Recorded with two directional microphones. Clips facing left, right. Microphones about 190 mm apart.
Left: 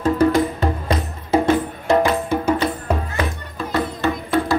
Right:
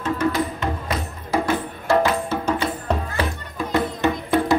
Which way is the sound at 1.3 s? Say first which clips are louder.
Left 5 dB; 20° left (ahead or behind).